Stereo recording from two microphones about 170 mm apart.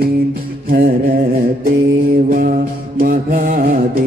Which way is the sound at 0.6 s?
55° right (ahead or behind).